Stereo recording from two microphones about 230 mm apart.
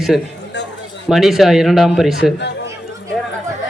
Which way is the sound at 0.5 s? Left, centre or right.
Left.